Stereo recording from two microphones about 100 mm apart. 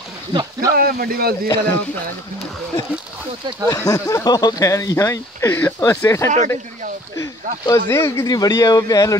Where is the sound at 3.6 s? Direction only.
35° left (ahead or behind).